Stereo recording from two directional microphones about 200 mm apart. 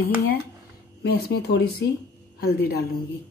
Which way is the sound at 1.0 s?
55° left (ahead or behind).